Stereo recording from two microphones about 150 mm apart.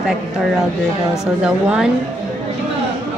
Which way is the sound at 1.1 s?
5° right (ahead or behind).